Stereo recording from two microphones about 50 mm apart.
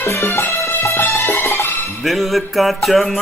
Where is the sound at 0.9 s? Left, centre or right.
Left.